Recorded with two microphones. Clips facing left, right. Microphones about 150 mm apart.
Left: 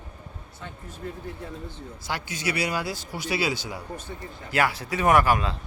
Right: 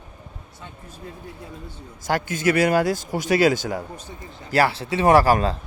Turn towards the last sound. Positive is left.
turn(degrees=-40)  # may be behind; listen again after turning